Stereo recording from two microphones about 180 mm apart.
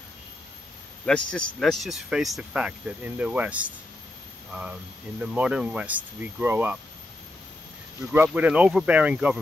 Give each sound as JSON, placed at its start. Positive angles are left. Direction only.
{"t": 1.0, "sound": "speech", "side_deg": 5}
{"t": 5.2, "sound": "speech", "side_deg": -5}
{"t": 8.3, "sound": "speech", "side_deg": -5}